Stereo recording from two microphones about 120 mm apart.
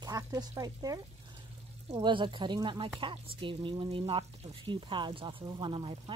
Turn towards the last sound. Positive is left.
turn(degrees=-45)  # may be behind; listen again after turning